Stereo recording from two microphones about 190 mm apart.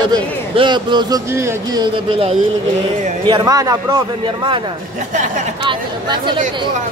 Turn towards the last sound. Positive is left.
turn(degrees=-25)  # may be behind; listen again after turning